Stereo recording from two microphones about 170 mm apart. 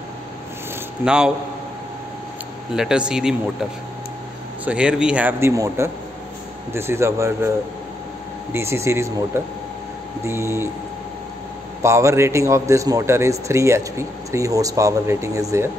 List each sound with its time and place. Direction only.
1.0 s speech: 5° right (ahead or behind)
2.7 s speech: 5° right (ahead or behind)
4.6 s a man's voice: 5° right (ahead or behind)
8.5 s a man's voice: 15° right (ahead or behind)
11.8 s a man's voice: 15° right (ahead or behind)